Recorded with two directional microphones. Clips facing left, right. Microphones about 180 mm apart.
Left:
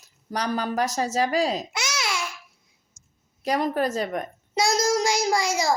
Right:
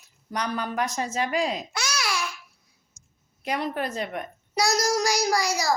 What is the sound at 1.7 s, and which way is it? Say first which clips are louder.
Babbling: even; 20° left (ahead or behind).